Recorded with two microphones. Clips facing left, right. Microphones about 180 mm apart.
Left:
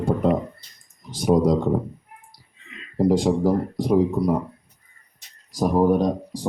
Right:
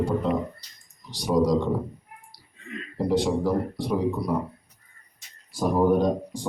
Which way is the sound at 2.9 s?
45° left (ahead or behind).